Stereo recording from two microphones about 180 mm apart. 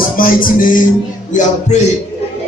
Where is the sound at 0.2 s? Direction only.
50° left (ahead or behind).